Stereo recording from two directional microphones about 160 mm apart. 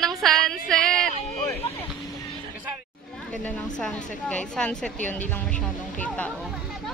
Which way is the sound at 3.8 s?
5° left (ahead or behind).